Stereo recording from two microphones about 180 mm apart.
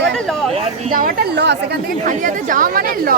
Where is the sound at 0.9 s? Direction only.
50° right (ahead or behind).